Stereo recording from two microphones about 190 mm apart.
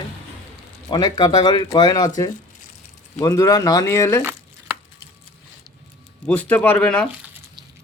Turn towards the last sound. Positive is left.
turn(degrees=5)  # may be behind; listen again after turning